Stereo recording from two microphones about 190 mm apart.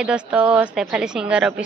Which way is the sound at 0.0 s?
5° right (ahead or behind).